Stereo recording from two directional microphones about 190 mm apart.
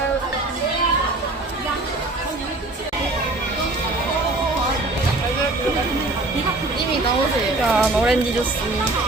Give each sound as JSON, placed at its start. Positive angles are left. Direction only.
{"t": 7.7, "sound": "speech", "side_deg": -5}